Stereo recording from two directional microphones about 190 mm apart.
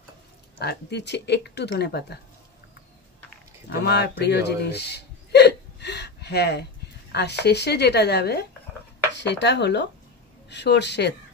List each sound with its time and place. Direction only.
0.6 s speech: 60° left (ahead or behind)
3.8 s hiccup: 60° left (ahead or behind)
7.1 s speech: 60° left (ahead or behind)